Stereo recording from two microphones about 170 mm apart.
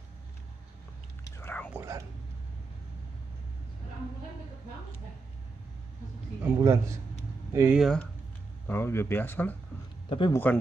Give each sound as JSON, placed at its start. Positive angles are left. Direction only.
{"t": 1.2, "sound": "whispering", "side_deg": 10}
{"t": 1.7, "sound": "whispering", "side_deg": -15}
{"t": 6.4, "sound": "a man's voice", "side_deg": -15}
{"t": 7.8, "sound": "speech", "side_deg": 5}
{"t": 10.0, "sound": "speech", "side_deg": 30}
{"t": 10.3, "sound": "speech", "side_deg": 10}